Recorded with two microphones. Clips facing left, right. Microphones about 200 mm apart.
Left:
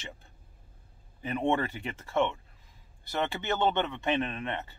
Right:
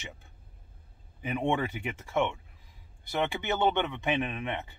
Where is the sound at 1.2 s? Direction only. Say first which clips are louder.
Left 1 dB; 15° right (ahead or behind).